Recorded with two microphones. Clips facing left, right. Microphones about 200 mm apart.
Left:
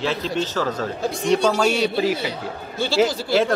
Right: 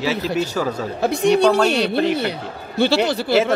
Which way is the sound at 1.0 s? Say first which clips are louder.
Right 6 dB; 65° right (ahead or behind).